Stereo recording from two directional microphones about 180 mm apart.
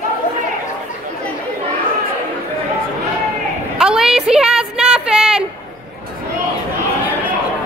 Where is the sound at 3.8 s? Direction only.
5° right (ahead or behind).